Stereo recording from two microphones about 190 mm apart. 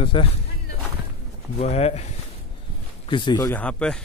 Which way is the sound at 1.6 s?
35° left (ahead or behind).